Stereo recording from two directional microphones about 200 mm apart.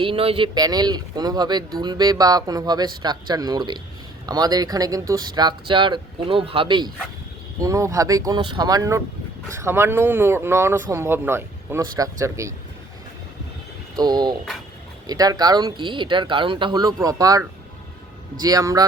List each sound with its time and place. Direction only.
0.0 s speech: 30° right (ahead or behind)
13.9 s speech: 20° right (ahead or behind)